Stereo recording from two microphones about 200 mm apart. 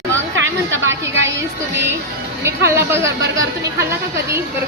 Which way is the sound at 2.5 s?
15° right (ahead or behind).